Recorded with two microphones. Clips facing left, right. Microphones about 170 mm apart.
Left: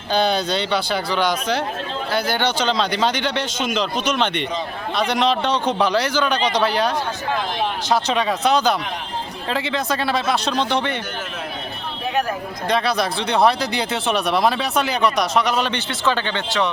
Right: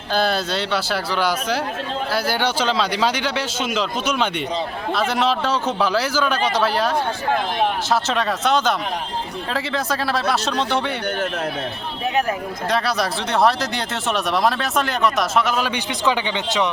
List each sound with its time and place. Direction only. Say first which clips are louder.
0.1 s a man's voice: left 1 dB; 5° right (ahead or behind)
12.6 s speech: left 2 dB; centre (ahead or behind)
15.9 s a man's voice: right 1 dB; 15° right (ahead or behind)